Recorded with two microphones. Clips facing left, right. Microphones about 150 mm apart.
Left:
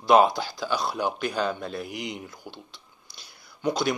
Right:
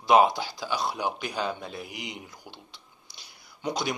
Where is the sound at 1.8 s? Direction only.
50° left (ahead or behind).